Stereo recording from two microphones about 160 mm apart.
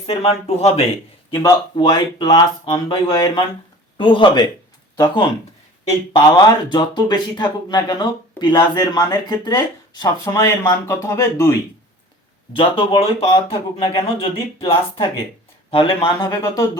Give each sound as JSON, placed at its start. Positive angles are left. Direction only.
{"t": 0.0, "sound": "speech", "side_deg": 40}
{"t": 1.3, "sound": "speech", "side_deg": 15}
{"t": 1.7, "sound": "speech", "side_deg": 30}
{"t": 6.1, "sound": "speech", "side_deg": 25}
{"t": 12.5, "sound": "speech", "side_deg": 30}